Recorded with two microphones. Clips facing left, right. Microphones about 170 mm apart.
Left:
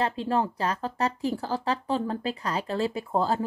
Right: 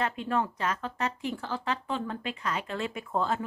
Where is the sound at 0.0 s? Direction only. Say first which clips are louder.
Left 3 dB; 30° left (ahead or behind).